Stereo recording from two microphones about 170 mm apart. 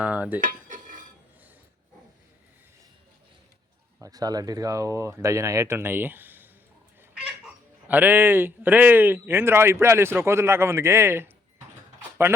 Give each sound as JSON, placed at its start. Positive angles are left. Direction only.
{"t": 0.0, "sound": "cutlery", "side_deg": -10}
{"t": 0.4, "sound": "cutlery", "side_deg": -50}
{"t": 4.0, "sound": "speech", "side_deg": -20}
{"t": 7.9, "sound": "speech", "side_deg": -10}